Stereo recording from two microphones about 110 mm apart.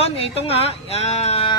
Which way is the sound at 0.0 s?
65° left (ahead or behind).